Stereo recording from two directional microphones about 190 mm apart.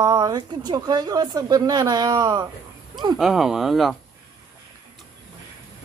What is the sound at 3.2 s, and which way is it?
Speech, centre (ahead or behind).